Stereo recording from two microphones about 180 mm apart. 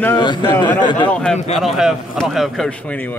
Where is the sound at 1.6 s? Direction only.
Centre (ahead or behind).